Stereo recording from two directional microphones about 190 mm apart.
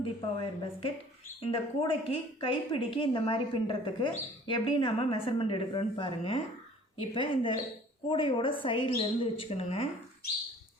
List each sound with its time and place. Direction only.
0.0 s speech: 25° left (ahead or behind)